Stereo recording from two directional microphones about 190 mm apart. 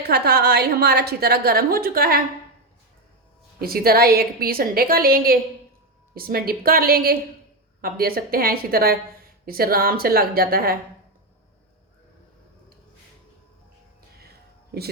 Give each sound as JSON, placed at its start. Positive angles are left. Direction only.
{"t": 0.0, "sound": "a woman's voice", "side_deg": -55}
{"t": 3.6, "sound": "a woman's voice", "side_deg": -55}
{"t": 14.2, "sound": "a sound", "side_deg": -55}